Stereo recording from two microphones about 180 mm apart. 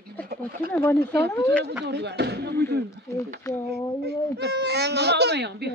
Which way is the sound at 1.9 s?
70° right (ahead or behind).